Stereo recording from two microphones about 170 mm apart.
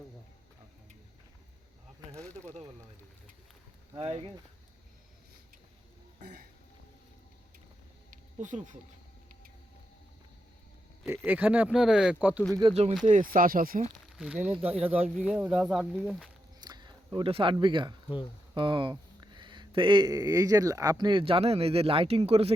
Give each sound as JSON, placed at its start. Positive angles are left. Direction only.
{"t": 2.1, "sound": "speech", "side_deg": 5}
{"t": 3.9, "sound": "speech", "side_deg": -35}
{"t": 8.4, "sound": "speech", "side_deg": -45}
{"t": 11.3, "sound": "speech", "side_deg": -10}
{"t": 12.6, "sound": "speech", "side_deg": -30}
{"t": 13.1, "sound": "speech", "side_deg": -50}
{"t": 14.2, "sound": "speech", "side_deg": -10}
{"t": 16.6, "sound": "a sound", "side_deg": -25}
{"t": 18.5, "sound": "speech", "side_deg": -30}